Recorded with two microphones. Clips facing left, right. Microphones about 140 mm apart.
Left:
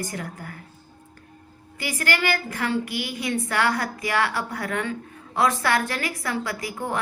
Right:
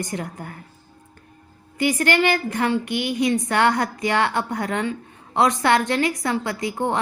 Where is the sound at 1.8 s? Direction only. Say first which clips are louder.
Right 7 dB; 25° right (ahead or behind).